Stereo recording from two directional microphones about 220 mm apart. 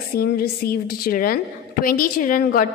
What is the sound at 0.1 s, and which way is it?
A woman's voice, 45° left (ahead or behind).